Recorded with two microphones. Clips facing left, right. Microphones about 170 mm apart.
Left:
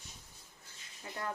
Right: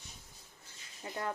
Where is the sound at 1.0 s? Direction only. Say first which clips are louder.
Right 4 dB; 25° right (ahead or behind).